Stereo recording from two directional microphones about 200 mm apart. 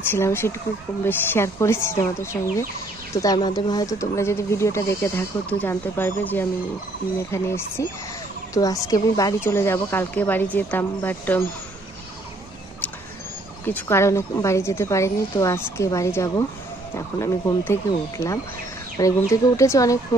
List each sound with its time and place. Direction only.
0.1 s speech: 10° left (ahead or behind)
13.7 s speech: 10° left (ahead or behind)